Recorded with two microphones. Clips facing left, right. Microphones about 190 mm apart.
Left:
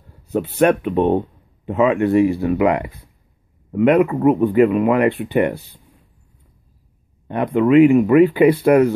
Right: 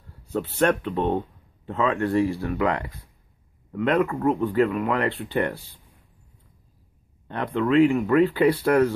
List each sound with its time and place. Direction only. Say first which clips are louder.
0.3 s speech: left 6 dB; 15° left (ahead or behind)
7.2 s speech: left 8 dB; 15° left (ahead or behind)